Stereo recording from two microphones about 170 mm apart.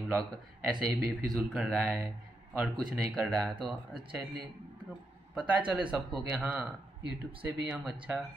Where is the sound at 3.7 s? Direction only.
Centre (ahead or behind).